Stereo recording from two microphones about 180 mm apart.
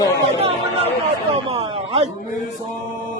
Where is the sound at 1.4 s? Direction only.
30° right (ahead or behind).